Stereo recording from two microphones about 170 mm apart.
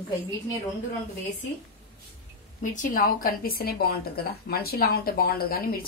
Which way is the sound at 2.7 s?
55° left (ahead or behind).